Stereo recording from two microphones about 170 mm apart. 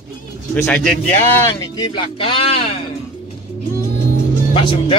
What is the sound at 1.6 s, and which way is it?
Speech, 25° left (ahead or behind).